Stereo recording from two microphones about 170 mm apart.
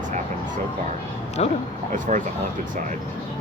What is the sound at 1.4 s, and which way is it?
Speech, 40° left (ahead or behind).